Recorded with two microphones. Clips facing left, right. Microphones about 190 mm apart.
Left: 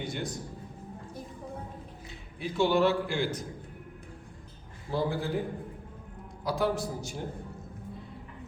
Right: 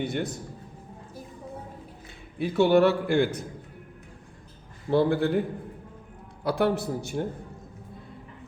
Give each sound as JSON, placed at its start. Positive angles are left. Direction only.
{"t": 0.0, "sound": "a man's voice", "side_deg": -60}
{"t": 2.4, "sound": "a man's voice", "side_deg": -55}
{"t": 4.9, "sound": "a man's voice", "side_deg": -65}
{"t": 6.4, "sound": "a man's voice", "side_deg": -65}